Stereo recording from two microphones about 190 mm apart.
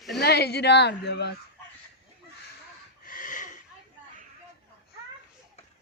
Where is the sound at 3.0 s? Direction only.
45° left (ahead or behind).